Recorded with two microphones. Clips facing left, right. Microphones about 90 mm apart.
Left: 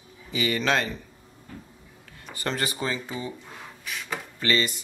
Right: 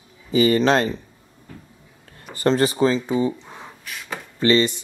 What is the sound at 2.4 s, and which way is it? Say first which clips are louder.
Speech: right 11 dB; 30° right (ahead or behind).